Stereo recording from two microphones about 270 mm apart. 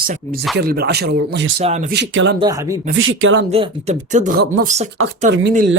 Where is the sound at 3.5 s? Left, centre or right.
Right.